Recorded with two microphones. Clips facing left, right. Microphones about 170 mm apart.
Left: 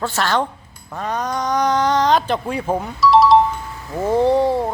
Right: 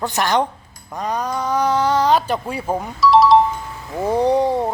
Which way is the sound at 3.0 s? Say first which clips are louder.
Even; centre (ahead or behind).